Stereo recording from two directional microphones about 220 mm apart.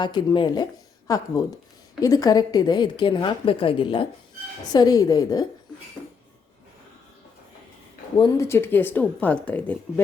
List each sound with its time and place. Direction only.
0.0 s a woman's voice: 20° left (ahead or behind)
8.2 s speech: 10° left (ahead or behind)